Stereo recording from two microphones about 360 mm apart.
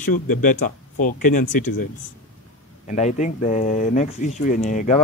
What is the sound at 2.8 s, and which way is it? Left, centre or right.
A man's voice, centre.